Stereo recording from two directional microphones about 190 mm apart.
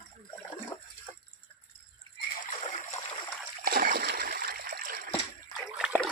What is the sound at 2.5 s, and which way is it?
Splash, 40° left (ahead or behind).